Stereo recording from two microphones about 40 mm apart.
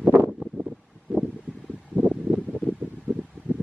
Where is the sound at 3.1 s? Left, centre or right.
Right.